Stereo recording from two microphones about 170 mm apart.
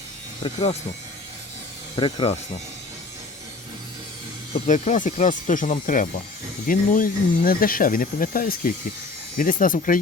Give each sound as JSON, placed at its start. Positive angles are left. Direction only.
{"t": 0.4, "sound": "speech", "side_deg": 35}
{"t": 2.0, "sound": "speech", "side_deg": 30}
{"t": 4.6, "sound": "speech", "side_deg": 45}